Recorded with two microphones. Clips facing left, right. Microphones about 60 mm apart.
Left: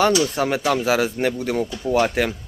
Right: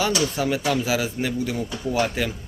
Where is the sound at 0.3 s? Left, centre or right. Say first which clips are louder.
Left 3 dB; left.